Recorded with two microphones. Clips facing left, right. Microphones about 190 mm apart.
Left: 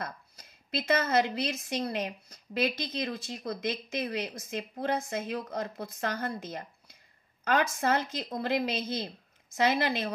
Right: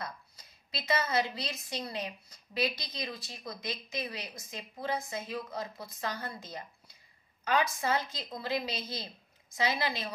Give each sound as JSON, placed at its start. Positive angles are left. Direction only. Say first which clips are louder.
{"t": 0.7, "sound": "a woman's voice", "louder": "left 4 dB", "side_deg": 50}
{"t": 7.5, "sound": "a woman's voice", "louder": "left 3 dB", "side_deg": 50}